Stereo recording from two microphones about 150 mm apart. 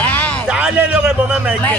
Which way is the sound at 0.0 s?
10° left (ahead or behind).